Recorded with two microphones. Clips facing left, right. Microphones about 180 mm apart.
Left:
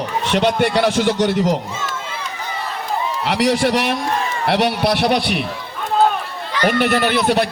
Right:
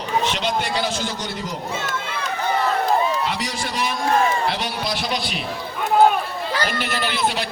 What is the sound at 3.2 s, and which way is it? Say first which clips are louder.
A man's voice: left 9 dB; 70° left (ahead or behind).